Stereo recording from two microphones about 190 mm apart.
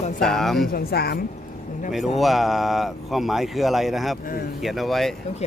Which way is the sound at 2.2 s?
Centre (ahead or behind).